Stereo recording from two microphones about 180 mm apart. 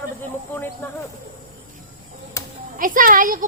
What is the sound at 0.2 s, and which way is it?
Speech, 10° left (ahead or behind).